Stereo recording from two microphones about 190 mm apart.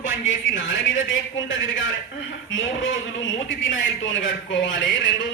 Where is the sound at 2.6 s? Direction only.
90° left.